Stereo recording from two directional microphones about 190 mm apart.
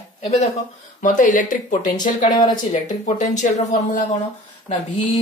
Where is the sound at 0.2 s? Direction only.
35° left (ahead or behind).